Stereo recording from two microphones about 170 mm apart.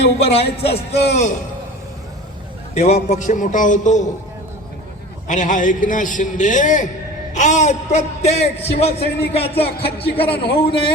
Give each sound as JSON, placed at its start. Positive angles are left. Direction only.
{"t": 0.0, "sound": "a man's voice", "side_deg": 35}
{"t": 0.7, "sound": "speech", "side_deg": 70}
{"t": 2.7, "sound": "a man's voice", "side_deg": 45}
{"t": 5.3, "sound": "a man's voice", "side_deg": 50}